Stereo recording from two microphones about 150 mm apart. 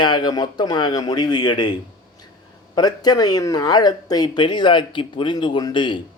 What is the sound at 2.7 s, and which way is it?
Speech, 25° left (ahead or behind).